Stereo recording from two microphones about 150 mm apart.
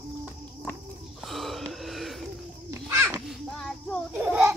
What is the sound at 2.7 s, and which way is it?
Babbling, 15° right (ahead or behind).